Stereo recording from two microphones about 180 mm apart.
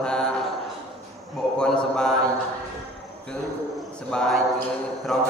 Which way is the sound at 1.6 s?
5° left (ahead or behind).